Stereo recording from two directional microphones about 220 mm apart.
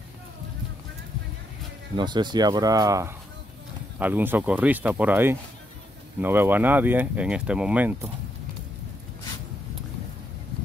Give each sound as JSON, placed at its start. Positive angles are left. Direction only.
{"t": 2.0, "sound": "speech", "side_deg": -20}